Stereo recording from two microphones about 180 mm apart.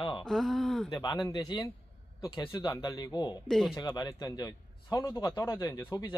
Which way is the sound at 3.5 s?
5° left (ahead or behind).